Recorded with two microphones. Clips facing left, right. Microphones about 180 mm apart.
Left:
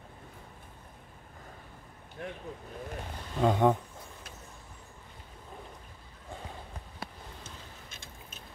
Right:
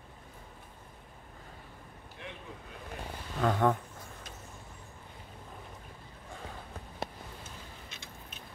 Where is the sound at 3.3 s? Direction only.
20° left (ahead or behind).